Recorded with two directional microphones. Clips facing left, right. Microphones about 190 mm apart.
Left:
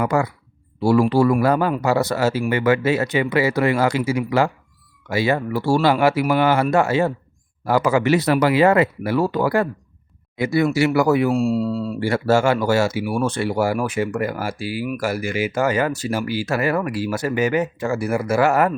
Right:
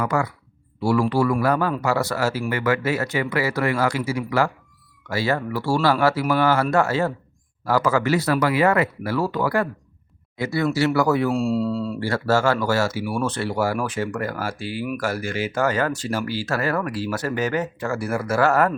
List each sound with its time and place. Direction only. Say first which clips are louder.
0.0 s speech: left 3 dB; 25° left (ahead or behind); by 11.9 s 5° left (ahead or behind)
11.9 s speech: left 5 dB; 15° left (ahead or behind)